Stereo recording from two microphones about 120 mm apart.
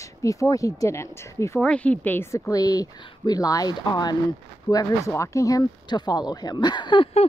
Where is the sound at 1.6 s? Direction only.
10° left (ahead or behind); by 7.1 s 40° left (ahead or behind).